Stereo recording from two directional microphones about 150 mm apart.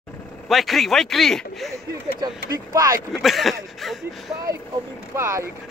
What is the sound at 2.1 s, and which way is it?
Speech, 25° right (ahead or behind).